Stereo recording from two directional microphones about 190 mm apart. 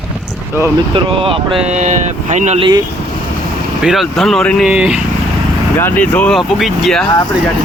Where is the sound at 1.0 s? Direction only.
25° right (ahead or behind).